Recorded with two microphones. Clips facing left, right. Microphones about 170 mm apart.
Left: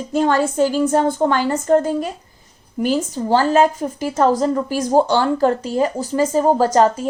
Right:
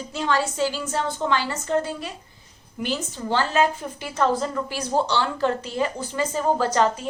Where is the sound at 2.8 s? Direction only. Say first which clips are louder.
Left 9 dB; 40° left (ahead or behind).